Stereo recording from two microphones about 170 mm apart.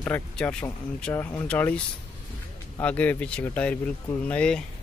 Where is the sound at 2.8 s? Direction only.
10° left (ahead or behind).